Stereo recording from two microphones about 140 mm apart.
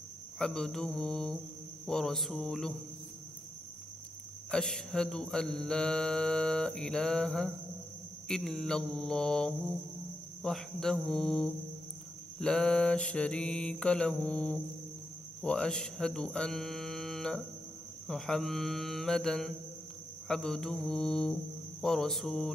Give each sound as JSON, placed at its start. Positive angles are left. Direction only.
{"t": 0.4, "sound": "mantra", "side_deg": 5}
{"t": 4.5, "sound": "mantra", "side_deg": 5}
{"t": 15.4, "sound": "speech", "side_deg": 5}
{"t": 18.0, "sound": "mantra", "side_deg": 0}